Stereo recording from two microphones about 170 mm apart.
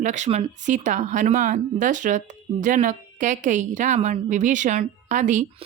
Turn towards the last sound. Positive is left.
turn(degrees=-45)  # may be behind; listen again after turning